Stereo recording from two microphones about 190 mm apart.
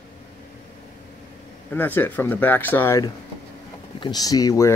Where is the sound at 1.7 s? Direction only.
10° left (ahead or behind).